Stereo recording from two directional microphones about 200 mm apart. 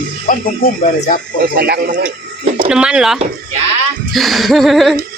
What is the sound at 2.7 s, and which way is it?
Speech, 5° right (ahead or behind).